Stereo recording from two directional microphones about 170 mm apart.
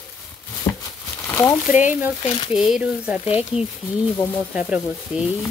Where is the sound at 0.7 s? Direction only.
15° left (ahead or behind).